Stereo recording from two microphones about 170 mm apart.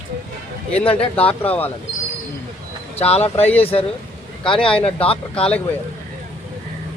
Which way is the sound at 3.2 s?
10° left (ahead or behind).